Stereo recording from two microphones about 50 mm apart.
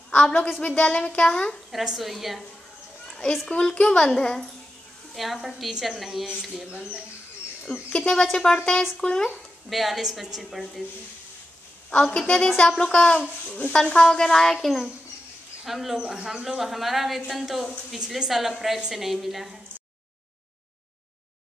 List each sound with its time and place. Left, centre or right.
0.1 s a sound: left
0.6 s a woman's voice: left
1.7 s speech: centre
3.1 s a sound: centre
3.4 s a woman's voice: centre
5.1 s speech: centre
6.7 s speech: centre
7.9 s a woman's voice: centre
9.7 s speech: centre
11.9 s a woman's voice: centre
16.0 s speech: centre